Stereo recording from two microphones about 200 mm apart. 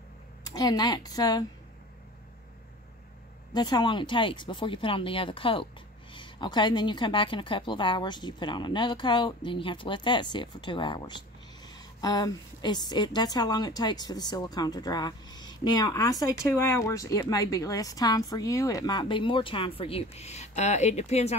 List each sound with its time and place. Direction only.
0.4 s a woman's voice: 20° left (ahead or behind)
3.5 s a woman's voice: 20° left (ahead or behind)